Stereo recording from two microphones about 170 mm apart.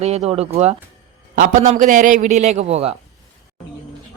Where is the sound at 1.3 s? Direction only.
50° right (ahead or behind).